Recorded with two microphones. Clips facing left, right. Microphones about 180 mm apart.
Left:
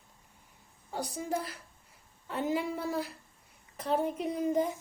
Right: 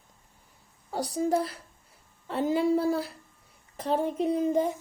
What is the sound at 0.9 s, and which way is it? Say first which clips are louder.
A child's voice: right 8 dB; 35° right (ahead or behind).